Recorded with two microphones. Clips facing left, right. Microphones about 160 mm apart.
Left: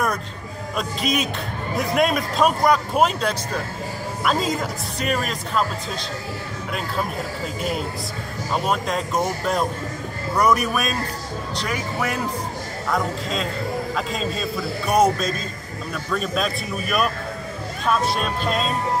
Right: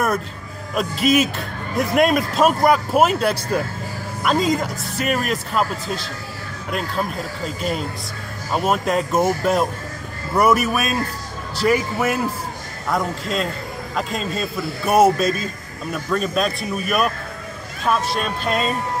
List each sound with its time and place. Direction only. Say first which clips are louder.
0.7 s speech: right 6 dB; 5° right (ahead or behind)
8.6 s speech: right 6 dB; 5° right (ahead or behind)
14.9 s a sound: right 4 dB; 5° right (ahead or behind)
15.9 s speech: right 3 dB; centre (ahead or behind)